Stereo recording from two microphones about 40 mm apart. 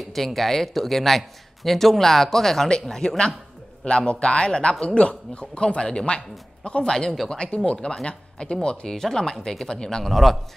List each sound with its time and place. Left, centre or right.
0.0 s a man's voice: centre; by 8.5 s left
8.8 s speech: centre
10.0 s speech: centre